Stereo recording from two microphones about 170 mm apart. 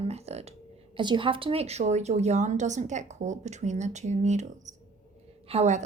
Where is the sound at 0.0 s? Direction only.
40° right (ahead or behind).